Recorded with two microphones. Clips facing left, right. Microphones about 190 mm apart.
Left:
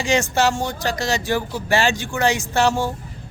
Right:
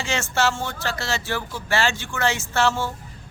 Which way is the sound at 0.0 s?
15° left (ahead or behind).